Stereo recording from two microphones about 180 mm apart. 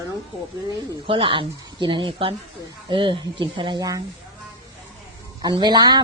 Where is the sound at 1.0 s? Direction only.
30° right (ahead or behind).